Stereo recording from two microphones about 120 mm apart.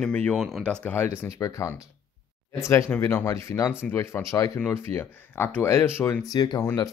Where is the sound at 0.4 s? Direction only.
Centre (ahead or behind).